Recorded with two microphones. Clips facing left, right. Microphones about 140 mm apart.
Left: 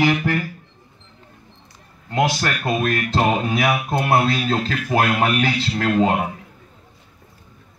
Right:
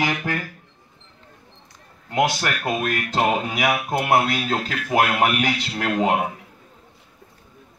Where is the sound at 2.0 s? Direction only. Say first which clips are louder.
Left 1 dB; 15° right (ahead or behind).